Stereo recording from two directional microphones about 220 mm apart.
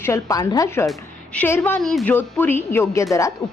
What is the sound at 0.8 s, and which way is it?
A woman's voice, 5° left (ahead or behind).